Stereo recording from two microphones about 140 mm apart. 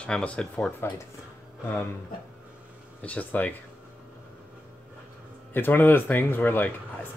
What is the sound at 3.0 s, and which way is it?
Speech, 10° left (ahead or behind).